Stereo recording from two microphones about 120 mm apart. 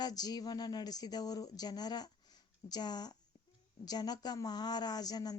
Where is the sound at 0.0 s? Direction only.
35° left (ahead or behind).